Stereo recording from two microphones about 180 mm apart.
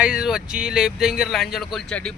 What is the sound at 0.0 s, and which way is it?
Speech, 5° right (ahead or behind).